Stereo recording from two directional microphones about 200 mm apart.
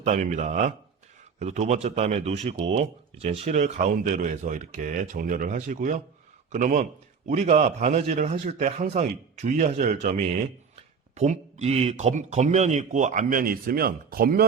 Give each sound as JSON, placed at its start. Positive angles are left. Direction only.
{"t": 0.0, "sound": "speech", "side_deg": -35}